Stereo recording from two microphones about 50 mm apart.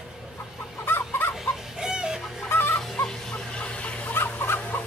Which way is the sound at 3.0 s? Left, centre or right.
Left.